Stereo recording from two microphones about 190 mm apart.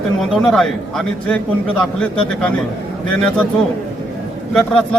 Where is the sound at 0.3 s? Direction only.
Centre (ahead or behind).